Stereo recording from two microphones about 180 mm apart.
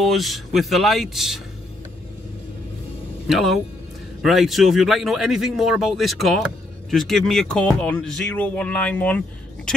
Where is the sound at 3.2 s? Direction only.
Centre (ahead or behind).